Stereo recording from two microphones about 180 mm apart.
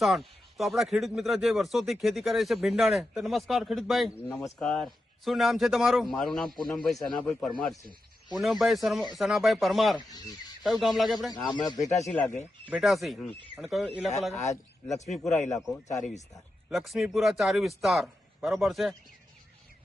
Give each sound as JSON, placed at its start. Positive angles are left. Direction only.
{"t": 0.0, "sound": "speech", "side_deg": 0}
{"t": 10.1, "sound": "speech", "side_deg": 20}
{"t": 10.6, "sound": "speech", "side_deg": 0}
{"t": 11.3, "sound": "speech", "side_deg": 20}
{"t": 11.9, "sound": "speech", "side_deg": 0}
{"t": 14.3, "sound": "speech", "side_deg": 40}
{"t": 15.5, "sound": "speech", "side_deg": 0}